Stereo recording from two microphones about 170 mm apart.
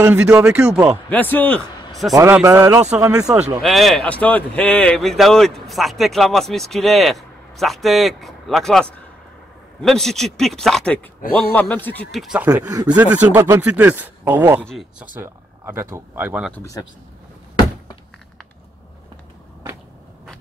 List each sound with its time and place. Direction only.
0.0 s speech: 10° right (ahead or behind)
1.1 s a man's voice: 10° left (ahead or behind)
2.1 s a man's voice: 15° right (ahead or behind)
3.6 s a man's voice: centre (ahead or behind)
14.7 s speech: centre (ahead or behind)
15.1 s speech: 15° right (ahead or behind)
16.5 s speech: 20° left (ahead or behind)